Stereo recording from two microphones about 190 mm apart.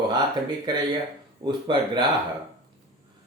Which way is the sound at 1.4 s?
25° right (ahead or behind).